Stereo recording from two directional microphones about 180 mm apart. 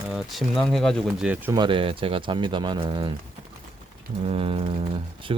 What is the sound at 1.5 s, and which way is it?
Speech, 25° right (ahead or behind).